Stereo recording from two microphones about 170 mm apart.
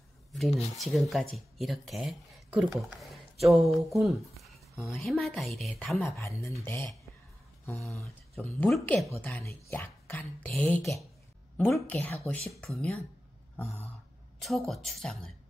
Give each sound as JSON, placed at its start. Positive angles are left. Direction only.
{"t": 0.3, "sound": "a woman's voice", "side_deg": 0}
{"t": 5.9, "sound": "speech", "side_deg": 15}
{"t": 7.7, "sound": "speech", "side_deg": 0}
{"t": 14.4, "sound": "a woman's voice", "side_deg": 0}